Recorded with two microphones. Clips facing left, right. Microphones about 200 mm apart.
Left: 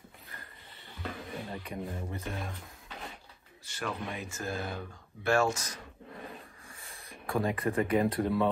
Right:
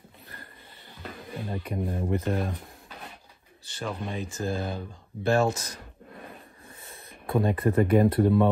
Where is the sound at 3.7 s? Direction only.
30° right (ahead or behind).